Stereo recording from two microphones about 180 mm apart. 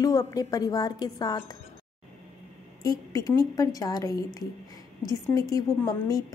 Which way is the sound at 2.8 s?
20° left (ahead or behind).